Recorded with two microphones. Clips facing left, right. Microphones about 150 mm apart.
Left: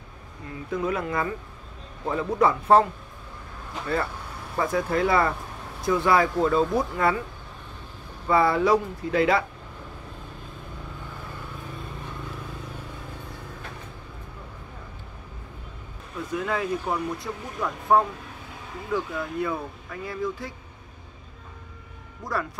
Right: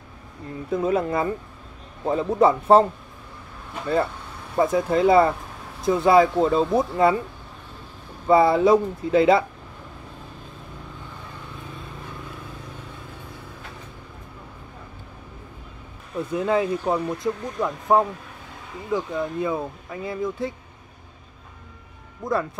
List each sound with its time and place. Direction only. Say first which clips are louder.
0.7 s speech: right 5 dB; 30° right (ahead or behind)
4.6 s speech: right 4 dB; 25° right (ahead or behind)
8.3 s speech: right 4 dB; 25° right (ahead or behind)
16.3 s speech: right 5 dB; 25° right (ahead or behind)
22.2 s speech: right 5 dB; 25° right (ahead or behind)